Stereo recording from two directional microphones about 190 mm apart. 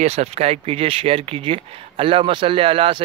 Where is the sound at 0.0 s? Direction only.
35° right (ahead or behind).